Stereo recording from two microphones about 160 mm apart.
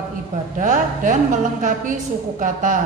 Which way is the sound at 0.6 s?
55° right (ahead or behind).